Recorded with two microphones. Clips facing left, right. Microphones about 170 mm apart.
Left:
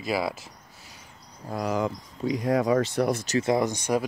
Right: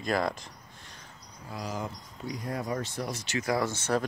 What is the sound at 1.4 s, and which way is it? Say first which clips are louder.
Speech: left 9 dB; 60° left (ahead or behind).